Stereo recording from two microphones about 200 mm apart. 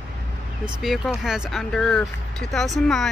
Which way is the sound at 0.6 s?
Centre (ahead or behind).